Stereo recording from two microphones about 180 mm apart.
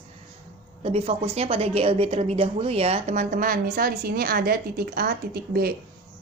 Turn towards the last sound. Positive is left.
turn(degrees=-60)  # may be behind; listen again after turning